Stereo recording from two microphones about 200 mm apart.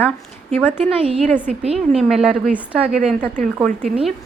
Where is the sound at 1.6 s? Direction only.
30° right (ahead or behind).